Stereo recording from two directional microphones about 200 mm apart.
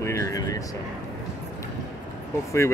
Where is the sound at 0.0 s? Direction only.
15° left (ahead or behind).